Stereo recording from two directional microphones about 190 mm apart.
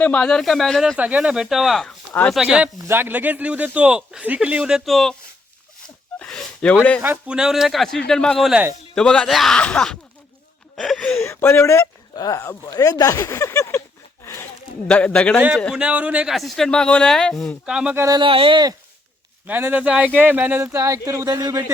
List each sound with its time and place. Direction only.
0.0 s speech: 5° left (ahead or behind)
2.4 s speech: 5° right (ahead or behind)
6.1 s a sound: 5° left (ahead or behind)
7.0 s speech: 10° right (ahead or behind)
10.8 s a sound: 5° left (ahead or behind)
11.2 s speech: 10° left (ahead or behind)
14.8 s speech: 5° left (ahead or behind)
15.4 s speech: 5° right (ahead or behind)
18.0 s speech: 20° right (ahead or behind)
19.5 s speech: 10° right (ahead or behind)